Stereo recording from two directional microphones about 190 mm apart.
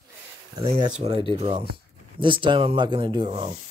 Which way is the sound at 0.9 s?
30° right (ahead or behind).